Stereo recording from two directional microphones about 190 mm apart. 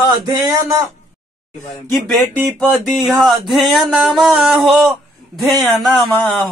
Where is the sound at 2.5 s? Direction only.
5° left (ahead or behind).